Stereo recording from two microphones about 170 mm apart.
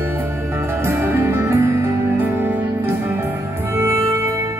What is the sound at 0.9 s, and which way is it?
Music, 15° right (ahead or behind).